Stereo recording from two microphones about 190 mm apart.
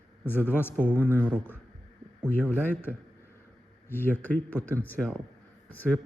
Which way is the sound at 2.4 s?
10° left (ahead or behind).